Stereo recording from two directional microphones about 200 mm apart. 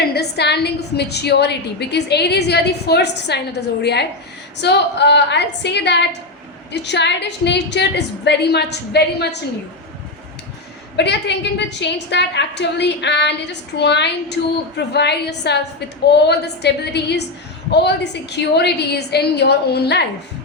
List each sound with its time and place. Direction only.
0.0 s a woman's voice: 55° left (ahead or behind)
10.9 s a woman's voice: 60° left (ahead or behind)